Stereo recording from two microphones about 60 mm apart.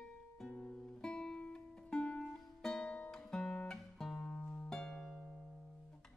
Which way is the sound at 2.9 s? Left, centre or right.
Left.